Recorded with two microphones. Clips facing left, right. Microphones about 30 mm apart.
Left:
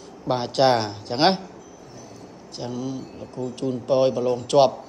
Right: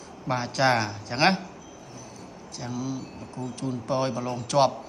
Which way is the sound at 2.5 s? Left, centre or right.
Left.